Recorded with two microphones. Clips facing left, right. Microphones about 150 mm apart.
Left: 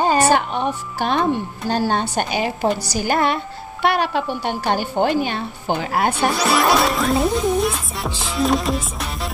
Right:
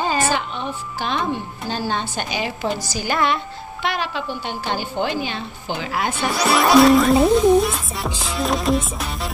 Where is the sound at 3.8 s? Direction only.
55° left (ahead or behind).